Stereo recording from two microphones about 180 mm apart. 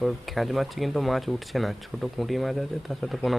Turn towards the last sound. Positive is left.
turn(degrees=0)  # may be behind; listen again after turning